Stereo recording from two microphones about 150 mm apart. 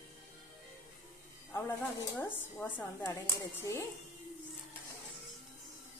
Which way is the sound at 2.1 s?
15° left (ahead or behind).